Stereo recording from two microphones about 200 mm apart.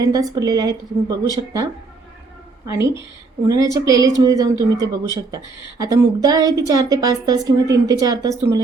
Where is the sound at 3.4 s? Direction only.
15° right (ahead or behind).